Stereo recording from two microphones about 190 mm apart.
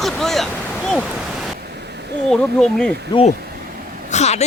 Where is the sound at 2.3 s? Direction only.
5° left (ahead or behind).